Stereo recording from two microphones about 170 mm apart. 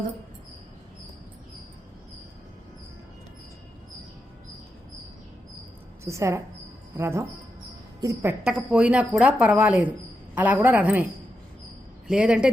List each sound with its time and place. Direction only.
6.1 s speech: 15° right (ahead or behind)
12.0 s speech: 5° right (ahead or behind)